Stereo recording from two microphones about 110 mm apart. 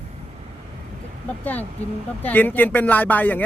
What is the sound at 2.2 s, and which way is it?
Speech, 15° left (ahead or behind).